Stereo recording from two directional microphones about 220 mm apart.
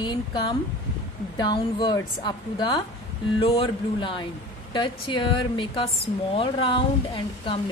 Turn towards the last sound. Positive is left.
turn(degrees=20)  # may be behind; listen again after turning